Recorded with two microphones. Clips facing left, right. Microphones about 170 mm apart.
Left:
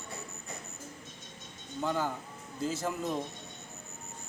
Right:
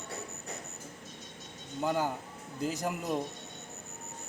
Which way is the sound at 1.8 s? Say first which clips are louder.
Right 1 dB; 15° right (ahead or behind).